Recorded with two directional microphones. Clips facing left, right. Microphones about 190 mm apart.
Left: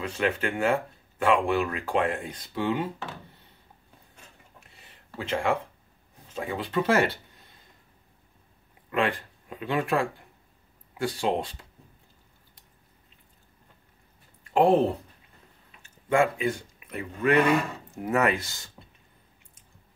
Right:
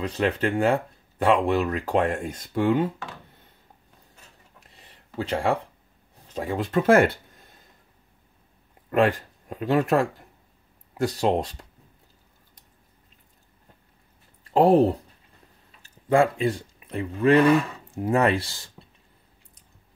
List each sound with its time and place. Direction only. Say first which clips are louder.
0.0 s speech: right 3 dB; 35° right (ahead or behind)
4.6 s a sound: right 1 dB; 35° right (ahead or behind)
6.3 s speech: right 4 dB; 40° right (ahead or behind)
8.9 s speech: right 6 dB; 40° right (ahead or behind)
14.4 s speech: right 3 dB; 35° right (ahead or behind)